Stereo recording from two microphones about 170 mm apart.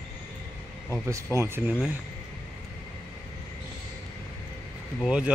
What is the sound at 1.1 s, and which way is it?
Speech, 15° right (ahead or behind).